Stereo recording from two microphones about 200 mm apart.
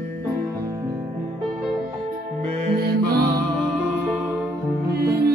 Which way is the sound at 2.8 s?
50° right (ahead or behind).